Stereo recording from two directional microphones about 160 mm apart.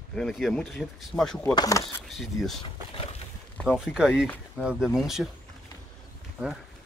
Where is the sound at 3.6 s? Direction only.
Centre (ahead or behind).